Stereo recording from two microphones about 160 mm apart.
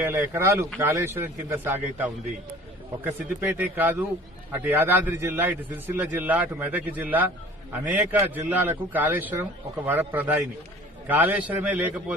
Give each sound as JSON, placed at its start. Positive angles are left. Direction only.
{"t": 0.0, "sound": "a man's voice", "side_deg": -15}